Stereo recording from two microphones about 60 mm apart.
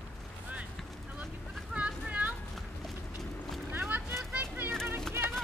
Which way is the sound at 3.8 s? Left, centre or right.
Right.